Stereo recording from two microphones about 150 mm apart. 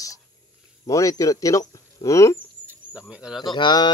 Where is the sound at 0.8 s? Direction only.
20° left (ahead or behind).